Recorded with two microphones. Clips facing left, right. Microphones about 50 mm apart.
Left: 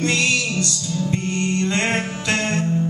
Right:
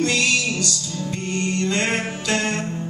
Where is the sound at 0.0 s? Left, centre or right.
Left.